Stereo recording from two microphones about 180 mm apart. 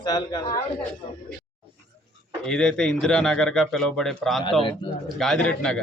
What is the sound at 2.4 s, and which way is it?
Speech, 5° left (ahead or behind).